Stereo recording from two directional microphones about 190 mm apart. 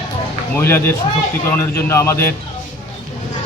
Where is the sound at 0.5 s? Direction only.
10° left (ahead or behind).